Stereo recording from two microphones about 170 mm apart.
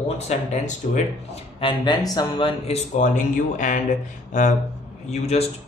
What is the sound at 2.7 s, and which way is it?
Speech, 45° left (ahead or behind).